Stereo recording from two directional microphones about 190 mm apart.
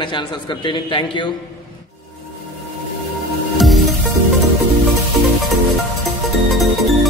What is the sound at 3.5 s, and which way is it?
Music, centre (ahead or behind).